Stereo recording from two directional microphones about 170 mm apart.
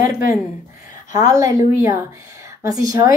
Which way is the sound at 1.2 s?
20° right (ahead or behind).